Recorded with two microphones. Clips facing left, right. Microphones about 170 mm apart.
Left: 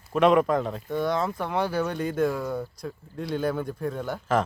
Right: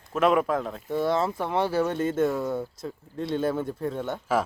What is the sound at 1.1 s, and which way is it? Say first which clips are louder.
Speech: right 2 dB; 25° right (ahead or behind).